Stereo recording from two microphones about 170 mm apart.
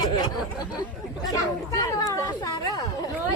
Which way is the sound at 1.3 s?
20° left (ahead or behind).